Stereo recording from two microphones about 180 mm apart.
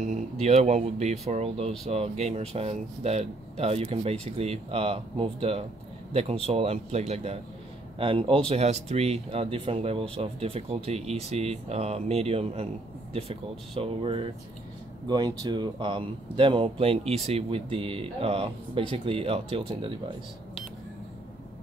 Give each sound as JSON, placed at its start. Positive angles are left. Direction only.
{"t": 0.0, "sound": "speech", "side_deg": -40}